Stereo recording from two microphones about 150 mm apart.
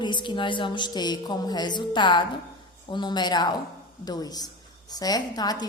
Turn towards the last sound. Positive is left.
turn(degrees=25)  # may be behind; listen again after turning